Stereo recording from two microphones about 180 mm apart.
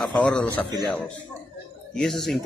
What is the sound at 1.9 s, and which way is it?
Speech, centre (ahead or behind).